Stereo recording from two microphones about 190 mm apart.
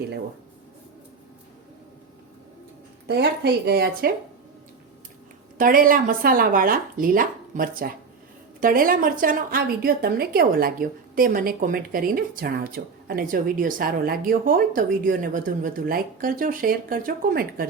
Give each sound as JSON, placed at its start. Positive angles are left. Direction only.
{"t": 3.1, "sound": "speech", "side_deg": -60}
{"t": 5.5, "sound": "a woman's voice", "side_deg": -50}